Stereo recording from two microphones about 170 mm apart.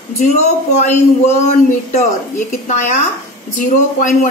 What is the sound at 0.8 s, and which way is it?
Speech, 45° left (ahead or behind).